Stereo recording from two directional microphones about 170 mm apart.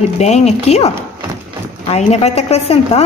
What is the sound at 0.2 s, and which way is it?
A woman's voice, 40° left (ahead or behind).